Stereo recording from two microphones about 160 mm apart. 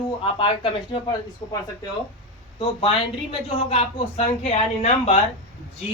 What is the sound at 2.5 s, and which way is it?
Speech, 35° left (ahead or behind).